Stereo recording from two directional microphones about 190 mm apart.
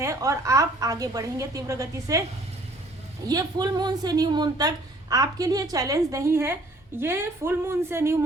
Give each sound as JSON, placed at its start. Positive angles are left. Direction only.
{"t": 0.0, "sound": "a woman's voice", "side_deg": -15}
{"t": 3.2, "sound": "a woman's voice", "side_deg": -20}